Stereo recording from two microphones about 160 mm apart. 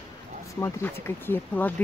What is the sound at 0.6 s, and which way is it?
Speech, 15° left (ahead or behind).